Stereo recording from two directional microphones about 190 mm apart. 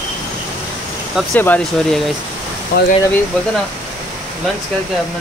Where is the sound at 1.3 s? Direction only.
10° left (ahead or behind).